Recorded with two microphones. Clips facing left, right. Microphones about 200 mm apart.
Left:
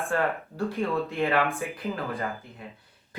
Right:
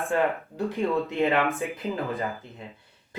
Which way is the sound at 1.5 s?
20° right (ahead or behind).